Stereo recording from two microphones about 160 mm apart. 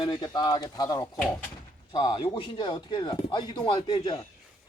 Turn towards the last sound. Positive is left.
turn(degrees=30)  # may be behind; listen again after turning